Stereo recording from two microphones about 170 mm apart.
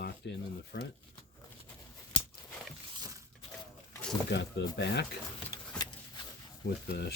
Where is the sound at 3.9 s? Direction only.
5° left (ahead or behind).